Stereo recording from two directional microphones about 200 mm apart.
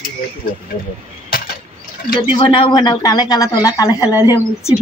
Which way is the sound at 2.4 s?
25° left (ahead or behind).